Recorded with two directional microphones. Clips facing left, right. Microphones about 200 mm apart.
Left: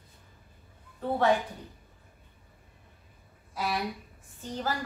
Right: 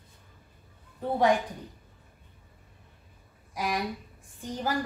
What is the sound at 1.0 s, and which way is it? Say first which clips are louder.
Speech: right 1 dB; 15° right (ahead or behind).